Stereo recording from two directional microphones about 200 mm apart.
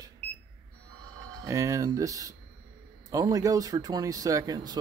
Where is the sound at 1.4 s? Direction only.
15° right (ahead or behind).